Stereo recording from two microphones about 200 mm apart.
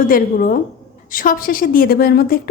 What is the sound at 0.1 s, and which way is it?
A woman's voice, 45° left (ahead or behind).